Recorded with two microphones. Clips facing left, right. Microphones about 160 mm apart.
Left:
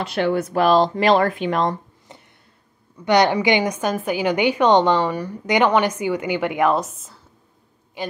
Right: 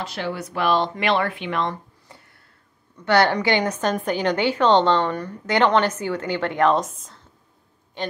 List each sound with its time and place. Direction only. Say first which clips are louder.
0.0 s speech: left 8 dB; 60° left (ahead or behind); by 1.8 s 40° left (ahead or behind)
2.1 s a sound: left 4 dB; 20° left (ahead or behind)
3.1 s a woman's voice: left 2 dB; 15° left (ahead or behind)